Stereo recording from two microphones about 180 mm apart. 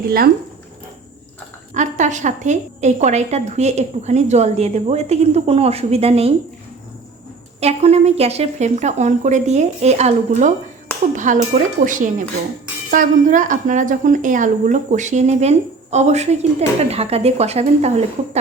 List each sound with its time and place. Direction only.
1.7 s a woman's voice: 45° right (ahead or behind)
7.6 s a woman's voice: 35° right (ahead or behind)
11.1 s a sound: 45° right (ahead or behind)
11.8 s a woman's voice: 45° right (ahead or behind)